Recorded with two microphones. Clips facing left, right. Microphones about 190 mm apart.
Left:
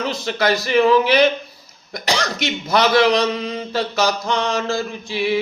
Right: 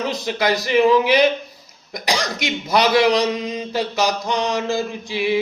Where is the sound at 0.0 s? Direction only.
15° right (ahead or behind).